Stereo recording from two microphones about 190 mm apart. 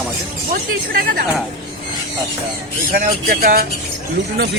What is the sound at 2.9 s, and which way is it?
Speech, 50° right (ahead or behind).